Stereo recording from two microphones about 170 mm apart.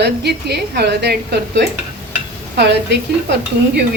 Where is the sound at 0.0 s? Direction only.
80° right.